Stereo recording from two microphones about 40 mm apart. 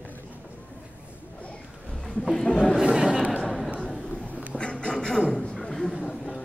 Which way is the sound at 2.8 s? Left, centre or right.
Centre.